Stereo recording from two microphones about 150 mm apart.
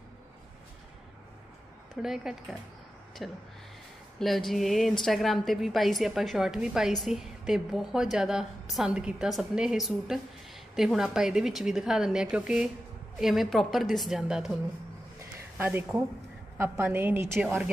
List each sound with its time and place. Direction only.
2.0 s a woman's voice: 5° right (ahead or behind)
15.1 s a sound: 15° right (ahead or behind)
16.5 s a woman's voice: 15° right (ahead or behind)